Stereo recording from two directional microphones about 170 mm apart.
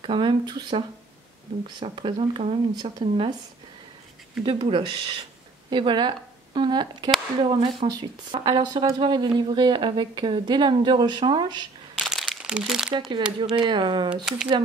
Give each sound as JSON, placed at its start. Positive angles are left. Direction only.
{"t": 0.0, "sound": "speech", "side_deg": -30}
{"t": 4.4, "sound": "a woman's voice", "side_deg": -30}
{"t": 11.9, "sound": "crumpling", "side_deg": 0}
{"t": 13.4, "sound": "speech", "side_deg": -25}